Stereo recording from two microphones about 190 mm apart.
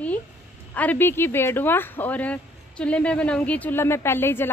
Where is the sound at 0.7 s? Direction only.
10° left (ahead or behind).